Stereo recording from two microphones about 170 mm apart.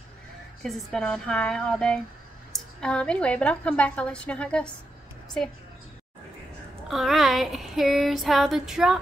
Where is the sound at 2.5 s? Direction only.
5° left (ahead or behind).